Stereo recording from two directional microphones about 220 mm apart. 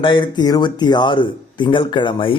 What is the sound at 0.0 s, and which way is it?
A man's voice, 20° left (ahead or behind).